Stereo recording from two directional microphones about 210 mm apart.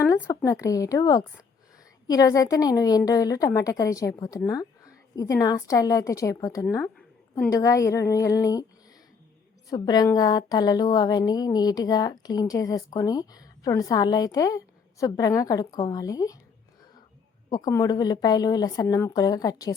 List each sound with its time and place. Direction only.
0.0 s speech: 10° left (ahead or behind)
9.6 s speech: 20° left (ahead or behind)
17.5 s speech: 15° left (ahead or behind)